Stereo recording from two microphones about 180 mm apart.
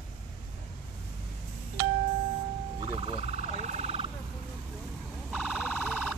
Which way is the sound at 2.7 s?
30° right (ahead or behind).